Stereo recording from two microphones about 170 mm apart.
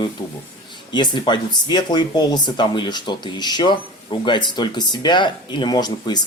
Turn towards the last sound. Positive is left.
turn(degrees=25)  # may be behind; listen again after turning